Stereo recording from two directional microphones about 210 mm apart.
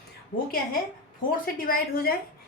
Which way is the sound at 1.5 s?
45° left (ahead or behind).